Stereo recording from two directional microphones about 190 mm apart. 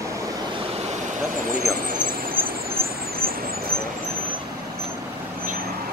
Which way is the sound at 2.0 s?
50° right (ahead or behind).